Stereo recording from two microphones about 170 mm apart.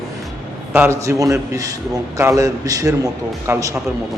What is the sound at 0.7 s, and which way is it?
A man's voice, 15° right (ahead or behind).